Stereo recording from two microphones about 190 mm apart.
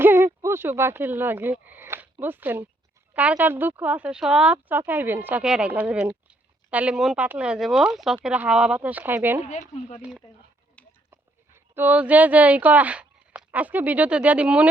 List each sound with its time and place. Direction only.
0.0 s a woman's voice: 10° right (ahead or behind)
9.4 s speech: 35° left (ahead or behind)
10.0 s speech: 5° right (ahead or behind)
10.8 s a sound: 5° left (ahead or behind)
11.1 s speech: 10° right (ahead or behind)